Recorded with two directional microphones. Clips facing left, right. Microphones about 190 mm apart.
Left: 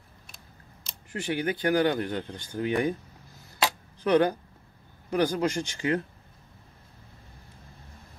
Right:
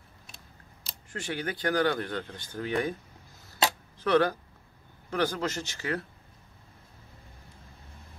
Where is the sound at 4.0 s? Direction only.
15° left (ahead or behind).